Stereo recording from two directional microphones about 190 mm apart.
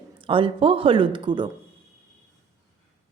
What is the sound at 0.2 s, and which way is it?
A woman's voice, 25° right (ahead or behind).